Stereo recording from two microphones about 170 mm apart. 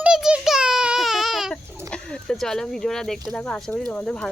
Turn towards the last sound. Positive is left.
turn(degrees=5)  # may be behind; listen again after turning